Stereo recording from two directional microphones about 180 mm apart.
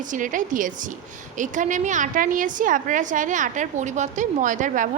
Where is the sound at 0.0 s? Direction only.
45° right (ahead or behind).